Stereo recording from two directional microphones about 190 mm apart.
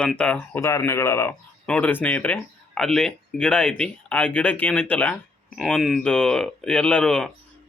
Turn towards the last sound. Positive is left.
turn(degrees=5)  # may be behind; listen again after turning